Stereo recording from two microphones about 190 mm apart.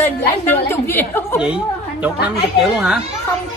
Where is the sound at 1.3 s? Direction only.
5° right (ahead or behind).